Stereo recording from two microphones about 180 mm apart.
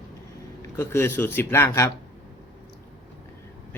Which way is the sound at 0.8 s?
15° left (ahead or behind).